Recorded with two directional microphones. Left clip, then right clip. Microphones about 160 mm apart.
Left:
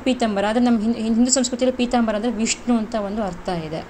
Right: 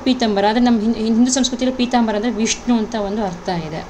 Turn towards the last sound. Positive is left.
turn(degrees=15)  # may be behind; listen again after turning